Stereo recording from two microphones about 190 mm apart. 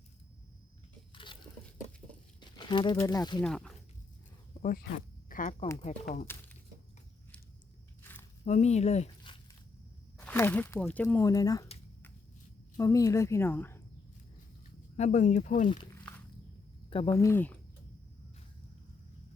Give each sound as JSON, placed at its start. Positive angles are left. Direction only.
{"t": 1.1, "sound": "biting", "side_deg": 25}
{"t": 2.4, "sound": "speech", "side_deg": 25}
{"t": 3.4, "sound": "speech", "side_deg": 5}
{"t": 4.6, "sound": "speech", "side_deg": 50}
{"t": 6.3, "sound": "speech", "side_deg": 10}
{"t": 8.4, "sound": "a sound", "side_deg": 35}
{"t": 10.2, "sound": "speech", "side_deg": 10}
{"t": 12.7, "sound": "speech", "side_deg": 15}
{"t": 14.9, "sound": "speech", "side_deg": 40}
{"t": 15.7, "sound": "speech", "side_deg": 25}
{"t": 17.1, "sound": "speech", "side_deg": 15}